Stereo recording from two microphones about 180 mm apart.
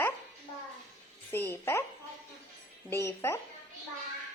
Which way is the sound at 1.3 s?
15° left (ahead or behind).